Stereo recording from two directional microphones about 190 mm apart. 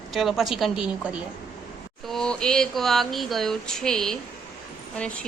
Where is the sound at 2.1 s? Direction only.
5° left (ahead or behind).